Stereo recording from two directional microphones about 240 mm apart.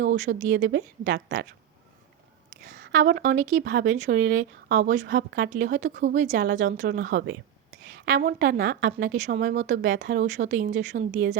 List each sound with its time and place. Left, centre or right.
0.0 s a woman's voice: right
0.5 s a woman's voice: right
2.6 s a woman's voice: right
3.9 s a woman's voice: right
6.1 s a woman's voice: right
9.8 s a woman's voice: right
10.3 s a woman's voice: right